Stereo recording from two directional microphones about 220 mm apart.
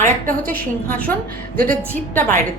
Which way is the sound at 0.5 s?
5° left (ahead or behind).